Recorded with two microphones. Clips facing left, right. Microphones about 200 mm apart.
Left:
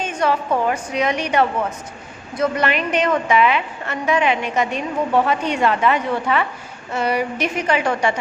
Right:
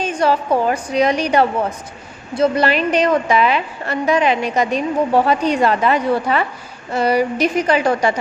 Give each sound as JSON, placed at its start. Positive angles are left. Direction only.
{"t": 0.0, "sound": "a woman's voice", "side_deg": -35}